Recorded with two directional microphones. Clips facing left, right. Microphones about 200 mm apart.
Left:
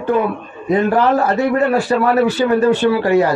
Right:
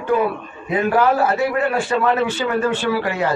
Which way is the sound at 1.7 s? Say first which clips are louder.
Left 4 dB; 40° left (ahead or behind).